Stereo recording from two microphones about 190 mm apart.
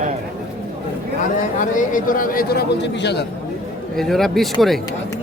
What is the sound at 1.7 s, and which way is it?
A man's voice, 45° left (ahead or behind).